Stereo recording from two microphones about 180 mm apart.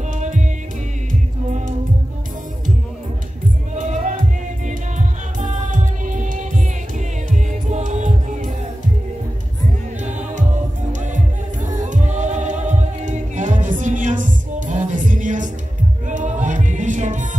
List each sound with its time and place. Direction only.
3.7 s music: 45° right (ahead or behind)
10.0 s music: 40° right (ahead or behind)